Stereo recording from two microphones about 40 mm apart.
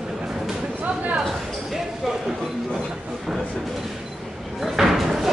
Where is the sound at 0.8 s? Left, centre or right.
Right.